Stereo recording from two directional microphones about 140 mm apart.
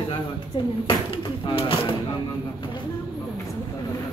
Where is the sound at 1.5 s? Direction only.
40° left (ahead or behind).